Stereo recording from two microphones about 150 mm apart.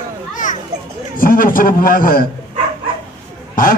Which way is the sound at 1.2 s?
70° left (ahead or behind).